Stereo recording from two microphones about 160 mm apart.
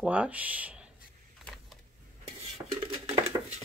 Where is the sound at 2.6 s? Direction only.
40° right (ahead or behind).